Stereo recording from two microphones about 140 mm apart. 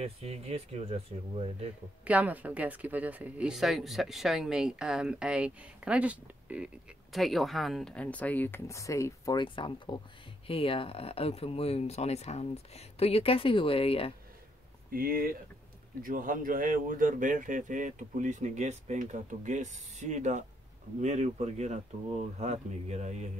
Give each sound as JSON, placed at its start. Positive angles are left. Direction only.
{"t": 0.0, "sound": "speech", "side_deg": -45}
{"t": 2.0, "sound": "speech", "side_deg": -10}
{"t": 9.4, "sound": "speech", "side_deg": 35}
{"t": 14.9, "sound": "speech", "side_deg": -90}
{"t": 16.0, "sound": "speech", "side_deg": -75}